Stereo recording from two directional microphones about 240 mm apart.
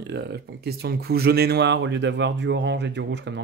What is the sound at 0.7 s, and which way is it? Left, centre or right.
Speech, right.